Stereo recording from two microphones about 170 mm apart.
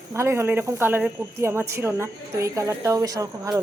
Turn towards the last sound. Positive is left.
turn(degrees=-20)  # may be behind; listen again after turning